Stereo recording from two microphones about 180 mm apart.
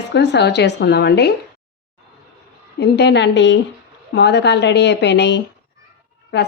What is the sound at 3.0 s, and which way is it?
Speech, 70° left (ahead or behind).